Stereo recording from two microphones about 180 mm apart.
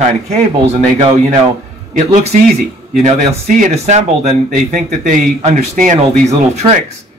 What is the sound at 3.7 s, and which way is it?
Speech, 35° right (ahead or behind).